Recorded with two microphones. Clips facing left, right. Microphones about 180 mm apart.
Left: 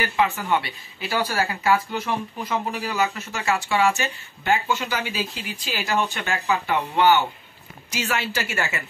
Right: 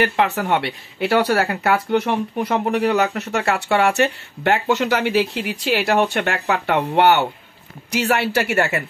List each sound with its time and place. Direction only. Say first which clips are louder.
0.0 s speech: right 5 dB; 60° right (ahead or behind)